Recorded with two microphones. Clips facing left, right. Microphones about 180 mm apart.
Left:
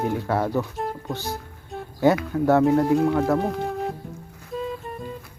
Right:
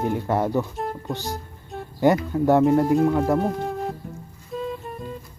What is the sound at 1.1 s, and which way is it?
Speech, 15° right (ahead or behind).